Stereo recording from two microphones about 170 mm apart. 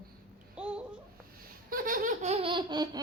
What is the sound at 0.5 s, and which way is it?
Babbling, 5° right (ahead or behind).